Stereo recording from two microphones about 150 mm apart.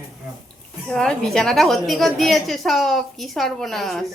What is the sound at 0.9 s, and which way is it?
A woman's voice, 5° left (ahead or behind).